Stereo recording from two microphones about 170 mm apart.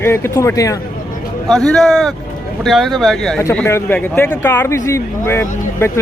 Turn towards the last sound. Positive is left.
turn(degrees=15)  # may be behind; listen again after turning